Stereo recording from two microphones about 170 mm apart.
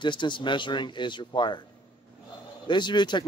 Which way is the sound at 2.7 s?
25° left (ahead or behind).